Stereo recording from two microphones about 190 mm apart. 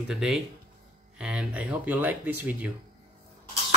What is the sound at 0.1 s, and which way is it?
Speech, 5° right (ahead or behind).